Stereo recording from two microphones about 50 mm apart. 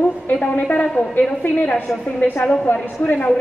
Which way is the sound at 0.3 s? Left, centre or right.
Left.